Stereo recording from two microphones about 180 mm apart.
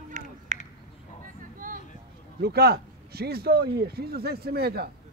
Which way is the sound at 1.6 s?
50° right (ahead or behind).